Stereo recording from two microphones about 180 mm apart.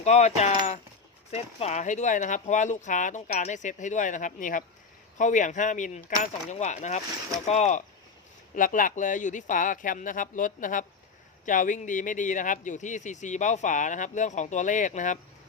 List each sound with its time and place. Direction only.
0.0 s a man's voice: 40° left (ahead or behind)